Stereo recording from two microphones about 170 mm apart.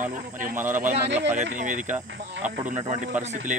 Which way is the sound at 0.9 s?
90° right.